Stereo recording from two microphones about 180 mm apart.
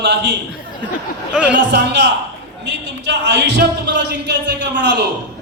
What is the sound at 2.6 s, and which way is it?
A man's voice, 75° right (ahead or behind).